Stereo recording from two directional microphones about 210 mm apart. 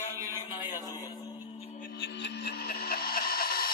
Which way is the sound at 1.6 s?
30° left (ahead or behind).